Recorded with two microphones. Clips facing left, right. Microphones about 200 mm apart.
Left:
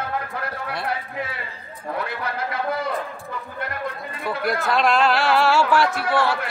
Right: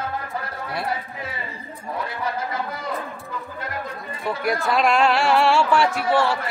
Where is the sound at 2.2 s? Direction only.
65° left (ahead or behind).